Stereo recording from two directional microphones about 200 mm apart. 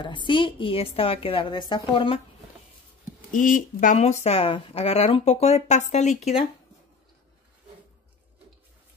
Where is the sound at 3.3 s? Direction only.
40° left (ahead or behind).